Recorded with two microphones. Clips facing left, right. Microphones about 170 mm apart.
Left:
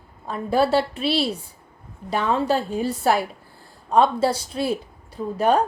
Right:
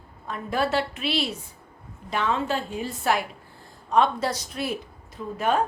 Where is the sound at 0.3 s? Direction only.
30° left (ahead or behind).